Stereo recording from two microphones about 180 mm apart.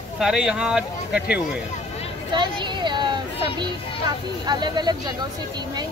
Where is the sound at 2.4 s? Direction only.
25° right (ahead or behind).